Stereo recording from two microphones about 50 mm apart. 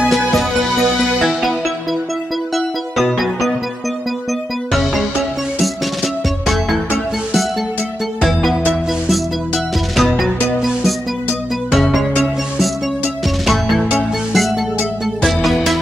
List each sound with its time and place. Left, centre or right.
0.1 s music: centre
6.4 s music: centre
8.3 s music: centre
9.9 s music: centre
14.3 s music: centre